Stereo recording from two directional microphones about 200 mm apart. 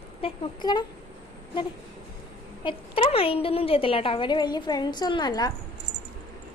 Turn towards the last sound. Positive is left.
turn(degrees=20)  # may be behind; listen again after turning